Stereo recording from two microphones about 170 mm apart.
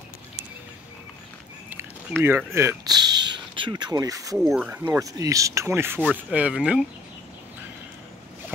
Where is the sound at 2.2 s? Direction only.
15° right (ahead or behind).